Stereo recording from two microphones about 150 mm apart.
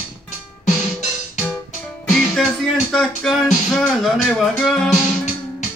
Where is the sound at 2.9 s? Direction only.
Centre (ahead or behind).